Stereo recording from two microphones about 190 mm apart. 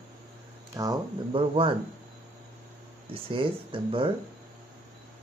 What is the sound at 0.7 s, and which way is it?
Speech, 25° right (ahead or behind).